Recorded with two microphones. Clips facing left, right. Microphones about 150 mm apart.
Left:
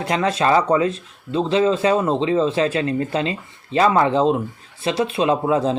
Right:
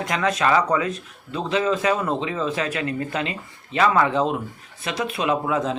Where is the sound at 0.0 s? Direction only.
30° left (ahead or behind).